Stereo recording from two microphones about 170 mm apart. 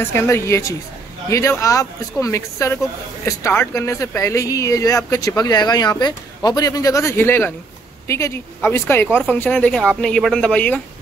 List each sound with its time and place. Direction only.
0.1 s speech: 15° left (ahead or behind)